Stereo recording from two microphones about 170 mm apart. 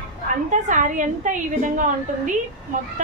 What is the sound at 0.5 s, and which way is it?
A woman's voice, 45° right (ahead or behind).